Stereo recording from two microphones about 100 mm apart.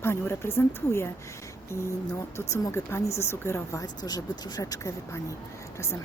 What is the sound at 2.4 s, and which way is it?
Speech, 30° left (ahead or behind).